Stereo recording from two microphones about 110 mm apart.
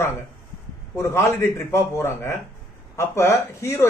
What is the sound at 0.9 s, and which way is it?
Speech, 25° left (ahead or behind).